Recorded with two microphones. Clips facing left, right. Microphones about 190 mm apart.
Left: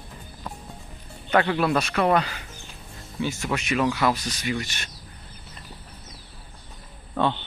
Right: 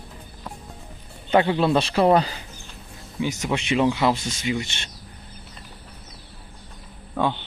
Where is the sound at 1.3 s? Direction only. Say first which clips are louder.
Right 3 dB; 25° right (ahead or behind).